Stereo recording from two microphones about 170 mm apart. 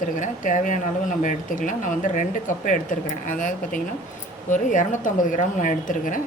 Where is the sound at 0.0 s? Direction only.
50° left (ahead or behind).